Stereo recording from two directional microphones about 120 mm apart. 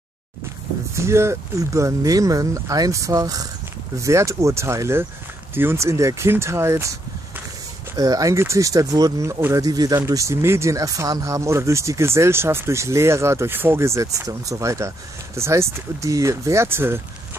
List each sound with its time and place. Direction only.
0.9 s speech: 25° right (ahead or behind)